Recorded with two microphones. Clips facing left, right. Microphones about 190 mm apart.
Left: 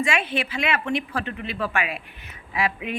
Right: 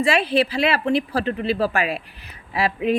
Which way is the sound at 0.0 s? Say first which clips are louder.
Right 6 dB; 35° right (ahead or behind).